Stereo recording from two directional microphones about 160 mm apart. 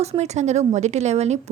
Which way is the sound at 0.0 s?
45° right (ahead or behind).